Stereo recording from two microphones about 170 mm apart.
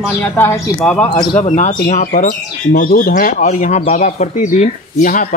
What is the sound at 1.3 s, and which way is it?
Speech, 45° left (ahead or behind).